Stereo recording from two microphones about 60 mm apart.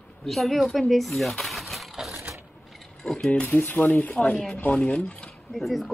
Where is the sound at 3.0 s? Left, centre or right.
Centre.